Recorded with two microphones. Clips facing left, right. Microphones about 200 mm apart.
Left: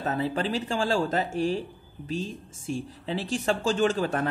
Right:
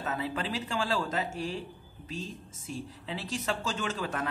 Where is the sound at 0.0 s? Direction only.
35° left (ahead or behind).